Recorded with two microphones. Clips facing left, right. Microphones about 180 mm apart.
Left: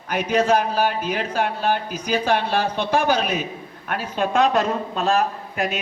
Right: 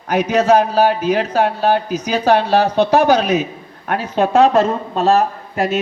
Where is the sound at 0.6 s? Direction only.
55° right (ahead or behind).